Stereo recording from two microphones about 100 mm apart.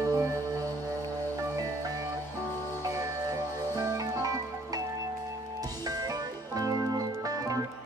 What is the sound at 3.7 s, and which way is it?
Music, 40° right (ahead or behind).